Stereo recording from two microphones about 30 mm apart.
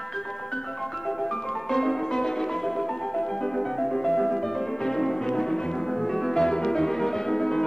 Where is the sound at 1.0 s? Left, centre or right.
Centre.